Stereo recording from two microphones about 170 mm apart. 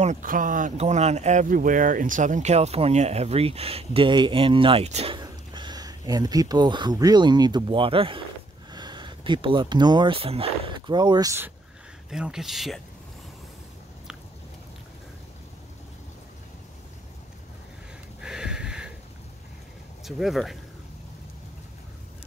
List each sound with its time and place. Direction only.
0.0 s speech: 50° right (ahead or behind); by 11.5 s 15° right (ahead or behind)
12.1 s speech: 5° right (ahead or behind)
18.2 s a sound: 5° right (ahead or behind)
20.0 s speech: centre (ahead or behind)